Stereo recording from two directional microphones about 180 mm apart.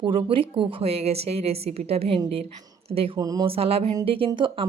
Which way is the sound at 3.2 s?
20° right (ahead or behind).